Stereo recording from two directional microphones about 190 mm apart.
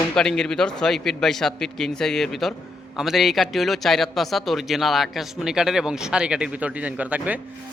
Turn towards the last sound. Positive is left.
turn(degrees=-10)  # may be behind; listen again after turning